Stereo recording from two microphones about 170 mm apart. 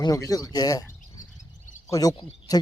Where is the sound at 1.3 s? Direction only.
45° left (ahead or behind).